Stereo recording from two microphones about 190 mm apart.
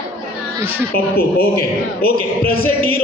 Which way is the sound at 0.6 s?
10° right (ahead or behind).